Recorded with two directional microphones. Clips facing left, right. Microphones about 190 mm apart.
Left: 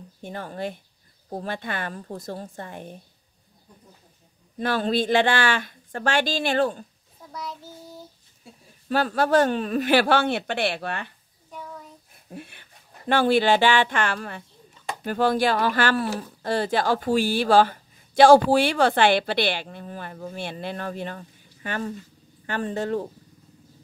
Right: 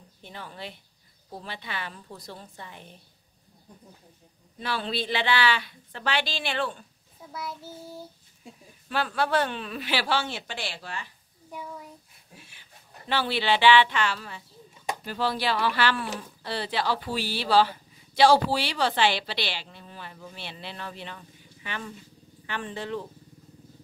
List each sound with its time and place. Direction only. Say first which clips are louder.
0.2 s speech: left 9 dB; 50° left (ahead or behind)
4.6 s speech: left 7 dB; 45° left (ahead or behind)
7.3 s child singing: left 1 dB; 10° right (ahead or behind)
8.8 s speech: left 5 dB; 40° left (ahead or behind); by 11.1 s 60° left (ahead or behind)
12.3 s speech: left 13 dB; 60° left (ahead or behind)